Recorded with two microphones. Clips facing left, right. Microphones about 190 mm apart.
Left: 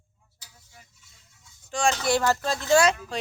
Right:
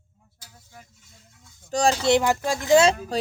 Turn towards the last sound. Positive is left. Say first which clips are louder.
# right 3 dB
turn(degrees=-35)  # may be behind; listen again after turning